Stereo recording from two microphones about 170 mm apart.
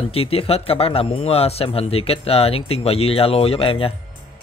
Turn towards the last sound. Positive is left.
turn(degrees=35)  # may be behind; listen again after turning